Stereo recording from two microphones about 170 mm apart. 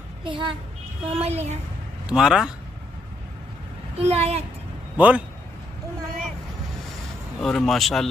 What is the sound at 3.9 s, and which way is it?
Speech, 35° right (ahead or behind).